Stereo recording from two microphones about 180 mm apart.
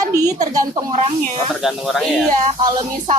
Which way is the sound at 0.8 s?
40° right (ahead or behind).